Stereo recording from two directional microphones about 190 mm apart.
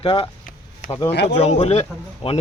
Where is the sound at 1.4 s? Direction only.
35° left (ahead or behind).